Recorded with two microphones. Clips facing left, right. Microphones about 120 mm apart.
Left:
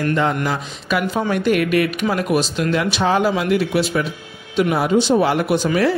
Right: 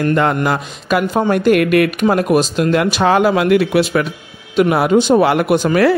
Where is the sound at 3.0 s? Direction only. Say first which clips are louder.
Right 5 dB; 65° right (ahead or behind).